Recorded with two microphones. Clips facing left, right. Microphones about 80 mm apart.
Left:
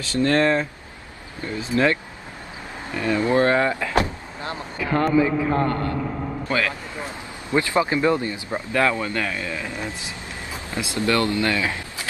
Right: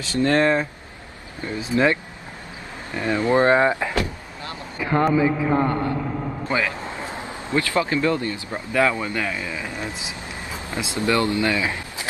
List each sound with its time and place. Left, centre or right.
0.0 s speech: right
3.0 s speech: right
3.9 s vehicle: left
4.7 s a sound: centre
5.0 s speech: centre
7.5 s speech: left
8.7 s speech: centre